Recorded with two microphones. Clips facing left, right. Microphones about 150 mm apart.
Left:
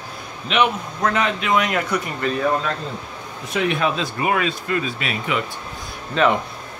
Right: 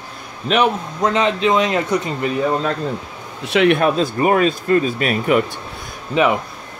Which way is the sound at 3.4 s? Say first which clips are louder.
Right 7 dB; 70° right (ahead or behind).